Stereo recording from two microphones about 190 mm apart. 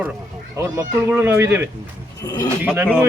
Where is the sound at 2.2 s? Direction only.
20° left (ahead or behind).